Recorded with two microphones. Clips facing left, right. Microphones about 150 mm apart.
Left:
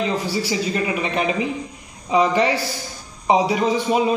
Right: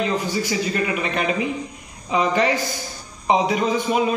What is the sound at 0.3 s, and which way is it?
A man's voice, 30° left (ahead or behind).